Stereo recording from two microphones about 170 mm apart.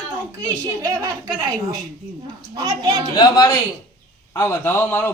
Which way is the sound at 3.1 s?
20° left (ahead or behind).